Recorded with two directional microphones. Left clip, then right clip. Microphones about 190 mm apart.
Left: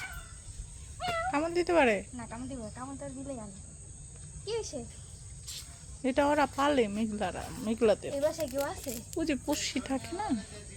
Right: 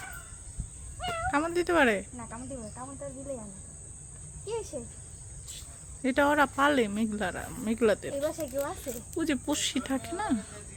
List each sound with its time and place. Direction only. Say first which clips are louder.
0.9 s speech: right 1 dB; 10° right (ahead or behind)
4.4 s speech: even; 10° right (ahead or behind)
6.0 s speech: right 2 dB; 10° right (ahead or behind)